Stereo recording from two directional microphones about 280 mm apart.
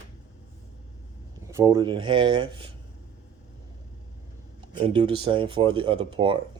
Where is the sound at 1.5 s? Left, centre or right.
Centre.